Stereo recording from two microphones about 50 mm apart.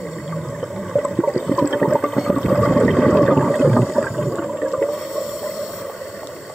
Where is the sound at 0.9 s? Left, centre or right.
Centre.